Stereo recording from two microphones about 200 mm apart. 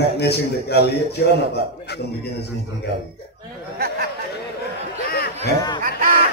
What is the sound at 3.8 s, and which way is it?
Chatter, 50° right (ahead or behind).